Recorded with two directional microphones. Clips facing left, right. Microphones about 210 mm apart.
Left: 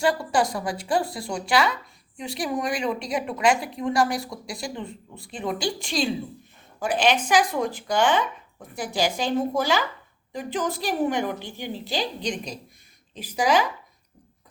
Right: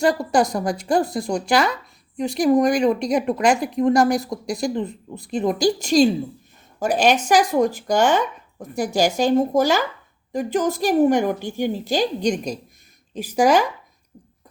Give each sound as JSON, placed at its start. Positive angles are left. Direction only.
{"t": 0.0, "sound": "speech", "side_deg": -40}